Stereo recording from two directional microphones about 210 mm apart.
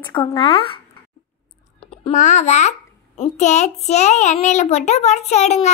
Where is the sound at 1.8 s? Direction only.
30° left (ahead or behind).